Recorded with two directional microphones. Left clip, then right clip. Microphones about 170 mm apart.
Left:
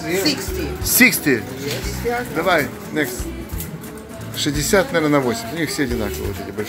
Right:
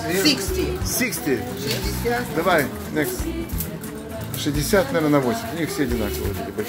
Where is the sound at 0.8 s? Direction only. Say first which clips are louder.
Left 11 dB; 40° left (ahead or behind).